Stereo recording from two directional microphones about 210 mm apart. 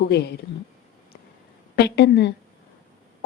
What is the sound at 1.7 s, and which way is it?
Speech, 55° left (ahead or behind).